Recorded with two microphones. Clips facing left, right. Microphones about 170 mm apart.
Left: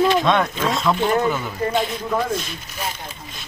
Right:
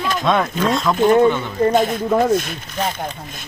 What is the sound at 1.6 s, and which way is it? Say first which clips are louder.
Speech: right 6 dB; 45° right (ahead or behind).